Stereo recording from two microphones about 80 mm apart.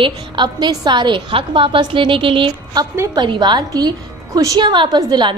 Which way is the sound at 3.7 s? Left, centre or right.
Right.